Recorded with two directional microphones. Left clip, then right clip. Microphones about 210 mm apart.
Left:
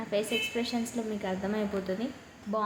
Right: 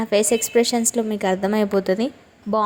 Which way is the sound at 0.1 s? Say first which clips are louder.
Right 12 dB; 50° right (ahead or behind).